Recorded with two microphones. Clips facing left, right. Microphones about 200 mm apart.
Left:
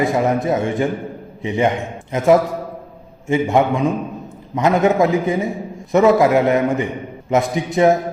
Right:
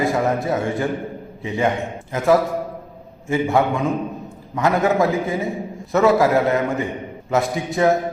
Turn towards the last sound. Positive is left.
turn(degrees=20)  # may be behind; listen again after turning